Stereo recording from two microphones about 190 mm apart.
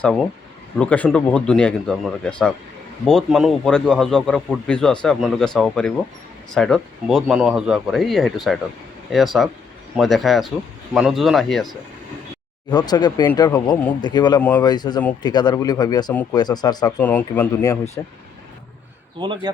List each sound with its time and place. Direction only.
0.0 s a man's voice: centre (ahead or behind)
12.7 s speech: 20° left (ahead or behind)
17.0 s speech: 10° left (ahead or behind)
19.2 s speech: 25° right (ahead or behind)